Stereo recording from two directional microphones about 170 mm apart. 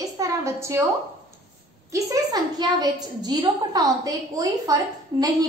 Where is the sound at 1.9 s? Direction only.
20° right (ahead or behind).